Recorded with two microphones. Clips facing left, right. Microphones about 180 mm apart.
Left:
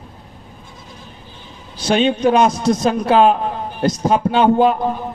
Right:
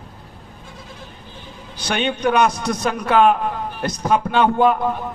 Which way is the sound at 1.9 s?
30° left (ahead or behind).